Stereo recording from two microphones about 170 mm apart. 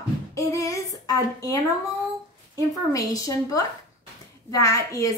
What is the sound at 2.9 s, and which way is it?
A woman's voice, 20° left (ahead or behind).